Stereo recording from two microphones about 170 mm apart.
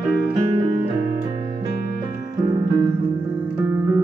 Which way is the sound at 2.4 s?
20° right (ahead or behind).